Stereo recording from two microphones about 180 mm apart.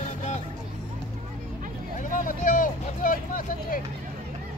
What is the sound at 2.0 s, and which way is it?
Vehicle, 45° left (ahead or behind).